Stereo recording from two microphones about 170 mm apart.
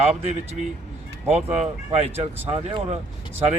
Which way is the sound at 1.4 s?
5° right (ahead or behind).